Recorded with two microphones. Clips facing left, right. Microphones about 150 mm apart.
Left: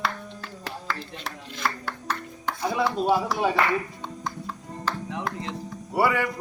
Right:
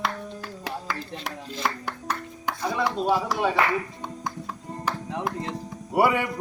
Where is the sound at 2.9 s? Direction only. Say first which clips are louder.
Left 1 dB; 10° left (ahead or behind).